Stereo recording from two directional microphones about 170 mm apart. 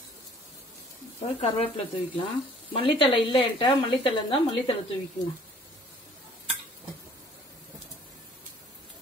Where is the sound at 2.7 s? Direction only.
30° left (ahead or behind).